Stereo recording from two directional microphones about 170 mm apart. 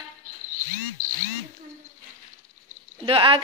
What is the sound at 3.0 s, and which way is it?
Speech, 30° right (ahead or behind).